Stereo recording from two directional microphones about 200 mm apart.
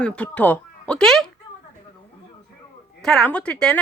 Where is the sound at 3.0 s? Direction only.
Centre (ahead or behind).